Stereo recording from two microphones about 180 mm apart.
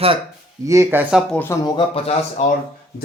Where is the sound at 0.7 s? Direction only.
15° right (ahead or behind).